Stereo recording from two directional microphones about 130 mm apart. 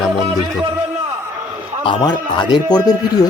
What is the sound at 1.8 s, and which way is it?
A man's voice, 35° left (ahead or behind).